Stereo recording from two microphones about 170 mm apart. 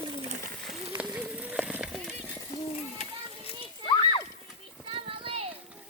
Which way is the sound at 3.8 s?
25° left (ahead or behind).